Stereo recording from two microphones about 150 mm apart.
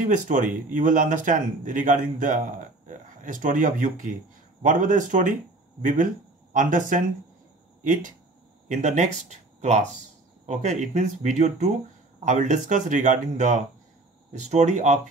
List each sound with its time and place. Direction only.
0.1 s speech: 60° right (ahead or behind)